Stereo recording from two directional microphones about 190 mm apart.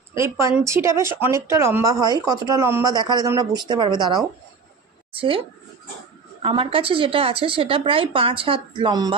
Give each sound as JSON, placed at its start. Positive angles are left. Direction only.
{"t": 0.1, "sound": "speech", "side_deg": -15}
{"t": 6.4, "sound": "speech", "side_deg": -25}